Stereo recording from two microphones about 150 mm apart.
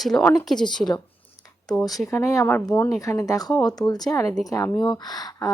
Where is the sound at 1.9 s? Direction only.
20° left (ahead or behind).